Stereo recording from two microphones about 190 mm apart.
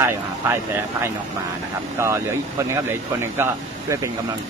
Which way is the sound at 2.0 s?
15° right (ahead or behind).